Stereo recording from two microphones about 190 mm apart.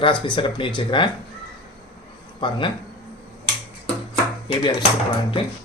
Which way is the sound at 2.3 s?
25° left (ahead or behind).